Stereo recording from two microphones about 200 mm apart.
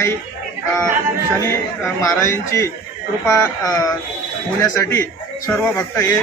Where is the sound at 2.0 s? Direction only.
15° left (ahead or behind).